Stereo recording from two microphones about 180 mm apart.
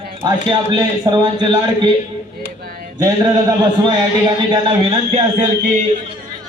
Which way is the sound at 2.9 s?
20° right (ahead or behind).